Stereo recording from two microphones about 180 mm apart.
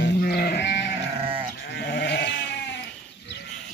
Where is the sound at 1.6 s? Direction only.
65° left (ahead or behind).